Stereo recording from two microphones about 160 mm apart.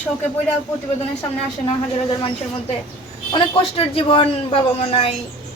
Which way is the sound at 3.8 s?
35° left (ahead or behind).